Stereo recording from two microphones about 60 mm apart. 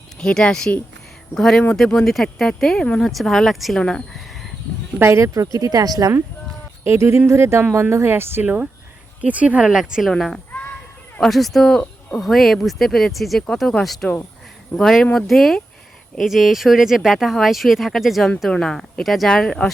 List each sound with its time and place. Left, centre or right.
0.2 s speech: centre
3.1 s speech: centre
3.8 s speech: centre
4.1 s a sound: centre
4.9 s speech: right
5.2 s speech: right
6.8 s speech: right
9.2 s speech: right
9.6 s a woman's voice: centre
10.1 s speech: centre
18.6 s speech: centre
19.3 s speech: centre